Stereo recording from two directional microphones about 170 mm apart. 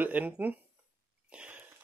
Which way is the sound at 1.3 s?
5° right (ahead or behind).